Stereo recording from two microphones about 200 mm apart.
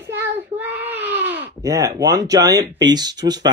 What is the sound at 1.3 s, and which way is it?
A woman's voice, 10° right (ahead or behind).